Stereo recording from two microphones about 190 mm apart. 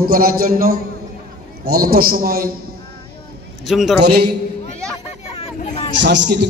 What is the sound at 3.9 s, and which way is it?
Speech, 60° right (ahead or behind).